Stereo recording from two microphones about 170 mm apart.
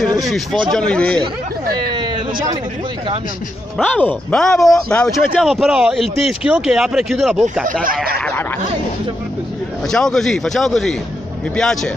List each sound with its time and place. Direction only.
0.2 s speech: centre (ahead or behind)
1.9 s a sound: 25° right (ahead or behind)
3.7 s speech: 10° left (ahead or behind)
7.8 s speech: 55° right (ahead or behind)
9.8 s speech: centre (ahead or behind)